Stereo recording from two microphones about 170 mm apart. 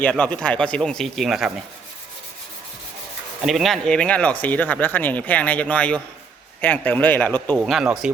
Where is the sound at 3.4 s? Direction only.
Centre (ahead or behind).